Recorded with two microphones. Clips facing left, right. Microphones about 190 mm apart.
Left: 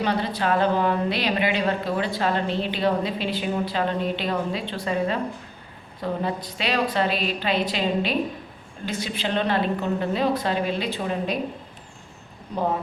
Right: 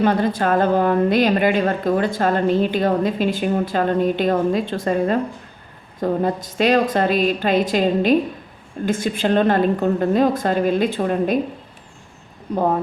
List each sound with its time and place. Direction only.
0.0 s a woman's voice: 50° right (ahead or behind)